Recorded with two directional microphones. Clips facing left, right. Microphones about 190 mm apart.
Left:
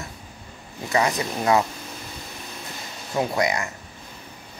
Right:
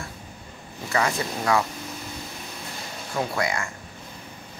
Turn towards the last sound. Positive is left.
turn(degrees=20)  # may be behind; listen again after turning